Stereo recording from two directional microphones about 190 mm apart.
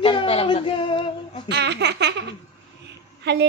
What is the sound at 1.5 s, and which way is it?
Speech, 65° right (ahead or behind).